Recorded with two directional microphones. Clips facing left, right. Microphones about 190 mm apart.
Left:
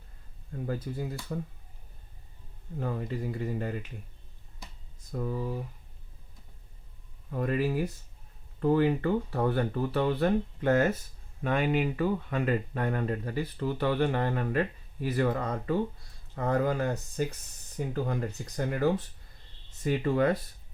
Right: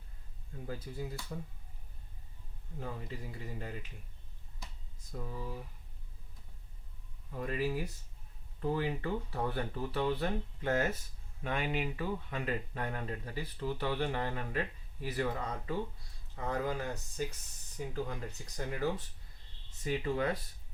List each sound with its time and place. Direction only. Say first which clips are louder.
0.5 s speech: left 8 dB; 65° left (ahead or behind)
2.7 s speech: left 9 dB; 65° left (ahead or behind)
5.1 s speech: left 9 dB; 70° left (ahead or behind)
7.3 s speech: left 6 dB; 60° left (ahead or behind)